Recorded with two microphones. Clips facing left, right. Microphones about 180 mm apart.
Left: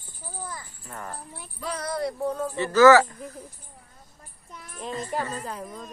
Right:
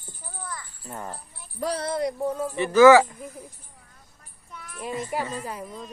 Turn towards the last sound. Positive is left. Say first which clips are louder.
# right 1 dB
turn(degrees=-10)  # may be behind; listen again after turning